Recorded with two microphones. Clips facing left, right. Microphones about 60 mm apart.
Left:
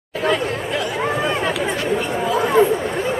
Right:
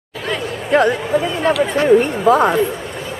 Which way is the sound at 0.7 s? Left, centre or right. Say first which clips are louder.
Right 11 dB; right.